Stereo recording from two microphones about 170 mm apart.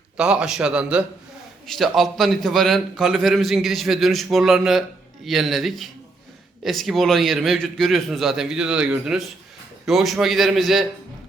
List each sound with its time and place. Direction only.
0.2 s a man's voice: 5° right (ahead or behind)